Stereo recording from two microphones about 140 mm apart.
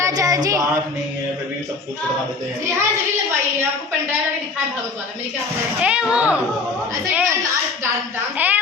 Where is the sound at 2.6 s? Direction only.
20° right (ahead or behind).